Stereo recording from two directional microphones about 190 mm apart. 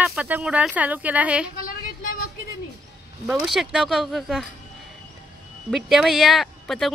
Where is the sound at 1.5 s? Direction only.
50° left (ahead or behind).